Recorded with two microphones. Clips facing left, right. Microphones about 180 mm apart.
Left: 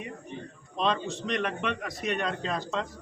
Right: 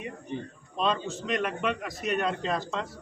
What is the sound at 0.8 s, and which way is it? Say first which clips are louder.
A man's voice: even; centre (ahead or behind).